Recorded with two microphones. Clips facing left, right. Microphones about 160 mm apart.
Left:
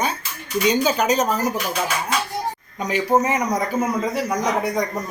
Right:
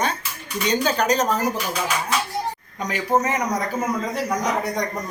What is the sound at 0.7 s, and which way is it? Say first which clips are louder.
Speech: left 1 dB; 10° left (ahead or behind).